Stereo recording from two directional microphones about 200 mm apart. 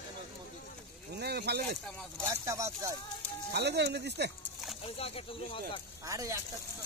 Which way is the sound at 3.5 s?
55° right (ahead or behind).